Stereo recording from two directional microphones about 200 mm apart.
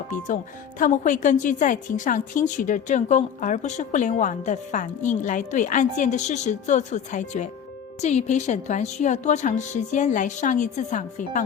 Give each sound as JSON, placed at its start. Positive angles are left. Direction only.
{"t": 0.8, "sound": "a woman's voice", "side_deg": 40}